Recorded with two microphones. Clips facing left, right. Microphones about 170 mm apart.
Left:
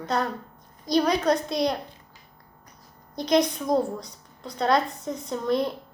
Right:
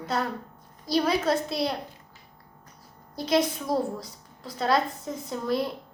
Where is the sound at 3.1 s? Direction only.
5° right (ahead or behind).